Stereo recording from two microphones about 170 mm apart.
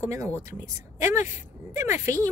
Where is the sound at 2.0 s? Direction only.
15° right (ahead or behind).